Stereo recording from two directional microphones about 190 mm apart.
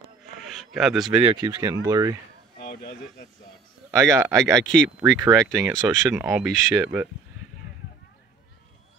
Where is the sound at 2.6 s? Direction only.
55° left (ahead or behind).